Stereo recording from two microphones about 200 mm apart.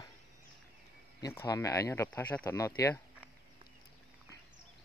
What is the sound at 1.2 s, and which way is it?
Speech, 15° left (ahead or behind).